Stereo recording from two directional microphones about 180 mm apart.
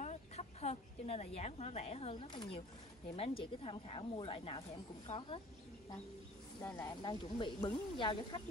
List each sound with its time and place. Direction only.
0.0 s a woman's voice: 40° left (ahead or behind)
6.6 s speech: 20° left (ahead or behind)